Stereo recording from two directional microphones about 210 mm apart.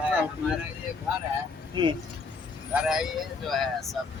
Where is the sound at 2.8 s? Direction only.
5° right (ahead or behind).